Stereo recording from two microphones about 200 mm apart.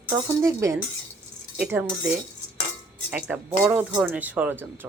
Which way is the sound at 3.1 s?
10° right (ahead or behind).